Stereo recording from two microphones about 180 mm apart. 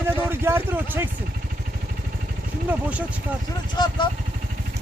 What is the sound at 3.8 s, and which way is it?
Speech, 25° left (ahead or behind).